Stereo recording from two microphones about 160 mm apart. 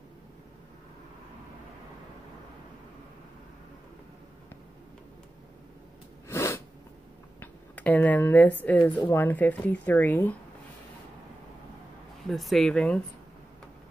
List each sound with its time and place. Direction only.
6.2 s sneeze: 15° left (ahead or behind)
7.3 s speech: 10° left (ahead or behind)
12.3 s speech: centre (ahead or behind)